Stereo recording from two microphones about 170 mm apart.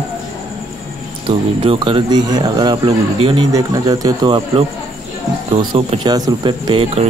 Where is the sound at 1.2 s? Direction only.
30° right (ahead or behind).